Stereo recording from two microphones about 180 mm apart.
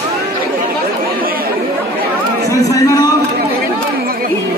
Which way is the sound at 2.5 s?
15° left (ahead or behind).